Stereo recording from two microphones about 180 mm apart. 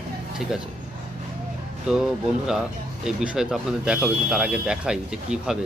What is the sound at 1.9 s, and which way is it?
Speech, 5° right (ahead or behind).